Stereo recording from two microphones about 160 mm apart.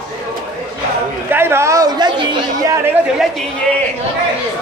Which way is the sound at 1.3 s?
15° right (ahead or behind).